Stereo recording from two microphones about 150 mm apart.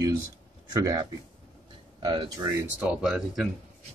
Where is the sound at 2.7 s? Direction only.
10° right (ahead or behind).